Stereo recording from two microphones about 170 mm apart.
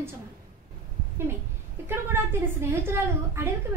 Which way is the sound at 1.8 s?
15° right (ahead or behind).